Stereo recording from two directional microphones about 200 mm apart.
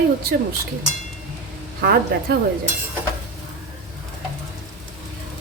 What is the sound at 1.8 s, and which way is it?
Speech, 50° right (ahead or behind).